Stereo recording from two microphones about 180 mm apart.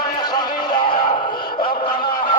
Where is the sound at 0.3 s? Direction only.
25° left (ahead or behind).